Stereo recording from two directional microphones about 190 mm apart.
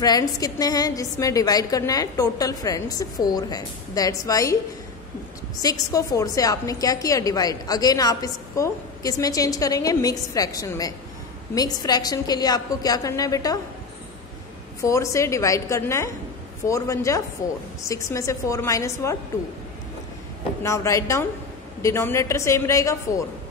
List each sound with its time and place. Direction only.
0.0 s a woman's voice: 20° left (ahead or behind)
5.6 s a woman's voice: 20° left (ahead or behind)
14.8 s a woman's voice: 15° left (ahead or behind)
20.6 s a woman's voice: 15° left (ahead or behind)